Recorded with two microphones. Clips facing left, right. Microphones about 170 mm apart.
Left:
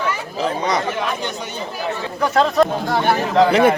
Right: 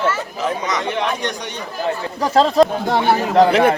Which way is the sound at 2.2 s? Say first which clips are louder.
Right 2 dB; 30° right (ahead or behind).